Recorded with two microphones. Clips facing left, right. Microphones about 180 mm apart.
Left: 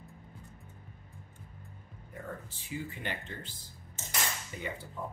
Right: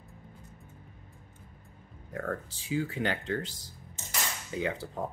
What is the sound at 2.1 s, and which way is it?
Speech, 85° right.